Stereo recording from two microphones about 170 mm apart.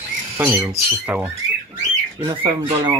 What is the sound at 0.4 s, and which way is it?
Speech, 10° right (ahead or behind).